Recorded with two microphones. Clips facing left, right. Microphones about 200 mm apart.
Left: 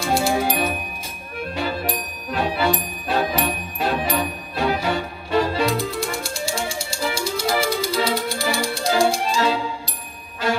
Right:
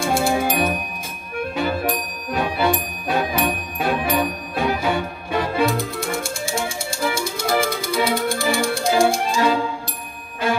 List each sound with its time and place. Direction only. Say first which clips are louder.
0.0 s music: right 1 dB; 55° right (ahead or behind)